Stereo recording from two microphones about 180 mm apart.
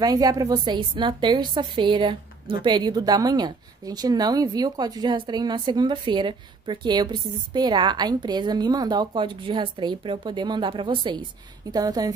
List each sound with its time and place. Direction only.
0.0 s a woman's voice: 20° right (ahead or behind)